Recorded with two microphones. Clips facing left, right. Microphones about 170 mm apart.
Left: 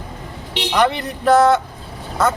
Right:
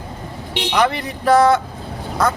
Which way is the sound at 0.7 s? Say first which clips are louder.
Left 1 dB; centre (ahead or behind).